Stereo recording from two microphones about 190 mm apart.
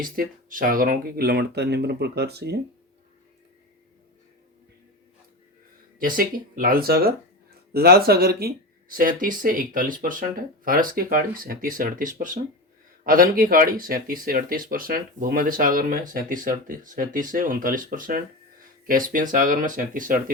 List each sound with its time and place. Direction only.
0.0 s speech: 45° right (ahead or behind)
6.0 s speech: 45° right (ahead or behind)